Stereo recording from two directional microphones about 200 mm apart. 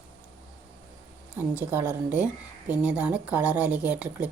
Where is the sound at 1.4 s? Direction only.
10° right (ahead or behind).